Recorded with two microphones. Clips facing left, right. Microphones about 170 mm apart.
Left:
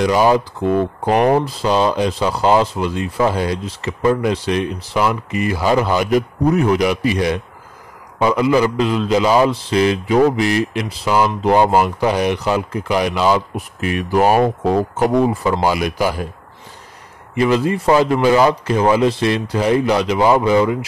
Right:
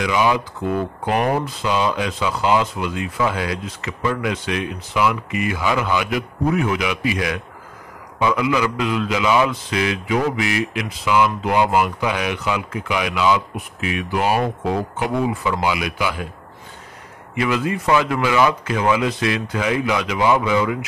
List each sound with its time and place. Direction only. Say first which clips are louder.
0.0 s speech: left 5 dB; 40° left (ahead or behind)
17.4 s speech: left 5 dB; 35° left (ahead or behind)